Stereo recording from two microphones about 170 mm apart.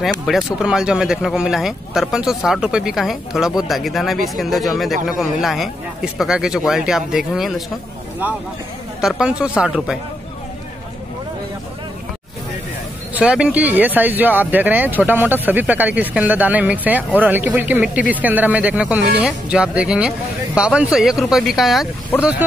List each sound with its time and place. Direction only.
0.0 s speech: centre (ahead or behind)
9.0 s speech: 5° right (ahead or behind)
13.1 s speech: 5° right (ahead or behind)